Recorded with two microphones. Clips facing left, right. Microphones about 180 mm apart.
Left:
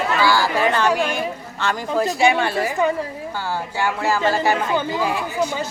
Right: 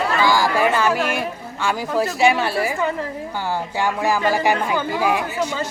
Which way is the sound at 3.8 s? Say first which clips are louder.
Even; 15° right (ahead or behind).